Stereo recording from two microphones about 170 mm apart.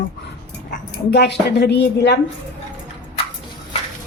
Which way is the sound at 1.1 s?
80° left.